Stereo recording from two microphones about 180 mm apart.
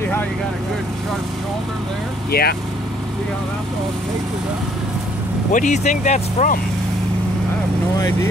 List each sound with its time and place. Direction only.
2.3 s speech: 60° left (ahead or behind)
5.5 s speech: 45° left (ahead or behind)